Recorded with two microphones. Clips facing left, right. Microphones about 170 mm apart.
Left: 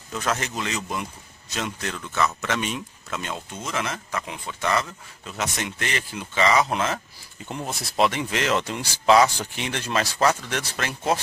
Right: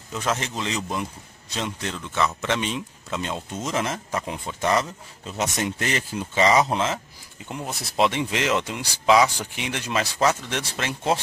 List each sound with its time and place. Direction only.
0.1 s a man's voice: 20° right (ahead or behind)
3.6 s a man's voice: 40° right (ahead or behind); by 7.0 s 20° right (ahead or behind)
7.4 s speech: 10° right (ahead or behind)
8.0 s speech: 20° right (ahead or behind)